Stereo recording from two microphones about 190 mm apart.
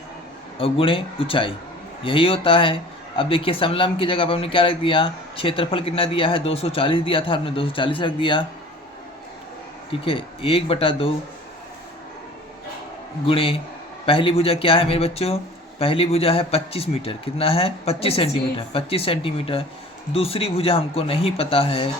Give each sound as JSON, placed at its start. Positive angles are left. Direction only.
{"t": 0.6, "sound": "speech", "side_deg": 30}
{"t": 9.9, "sound": "speech", "side_deg": 30}
{"t": 13.2, "sound": "speech", "side_deg": 30}